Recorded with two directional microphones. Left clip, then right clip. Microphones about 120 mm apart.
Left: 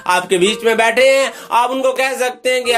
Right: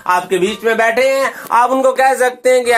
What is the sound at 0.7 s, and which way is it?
Speech, 45° left (ahead or behind).